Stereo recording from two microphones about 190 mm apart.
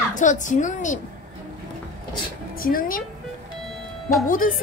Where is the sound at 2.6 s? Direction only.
50° left (ahead or behind).